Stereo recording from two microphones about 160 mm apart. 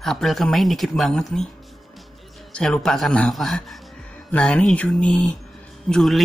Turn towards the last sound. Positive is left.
turn(degrees=0)  # may be behind; listen again after turning